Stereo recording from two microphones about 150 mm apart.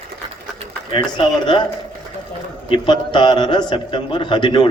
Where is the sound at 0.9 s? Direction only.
30° left (ahead or behind).